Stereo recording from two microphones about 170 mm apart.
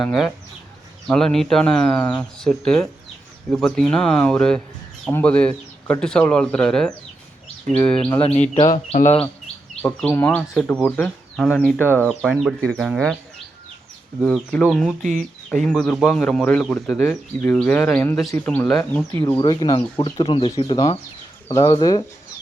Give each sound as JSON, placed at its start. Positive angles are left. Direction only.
{"t": 0.0, "sound": "speech", "side_deg": 0}
{"t": 8.2, "sound": "speech", "side_deg": 35}
{"t": 8.7, "sound": "speech", "side_deg": 45}
{"t": 9.8, "sound": "speech", "side_deg": 10}
{"t": 12.0, "sound": "speech", "side_deg": 0}
{"t": 14.2, "sound": "speech", "side_deg": 0}
{"t": 19.4, "sound": "speech", "side_deg": 25}